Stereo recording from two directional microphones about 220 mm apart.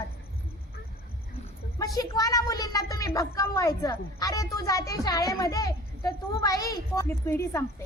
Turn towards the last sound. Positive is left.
turn(degrees=10)  # may be behind; listen again after turning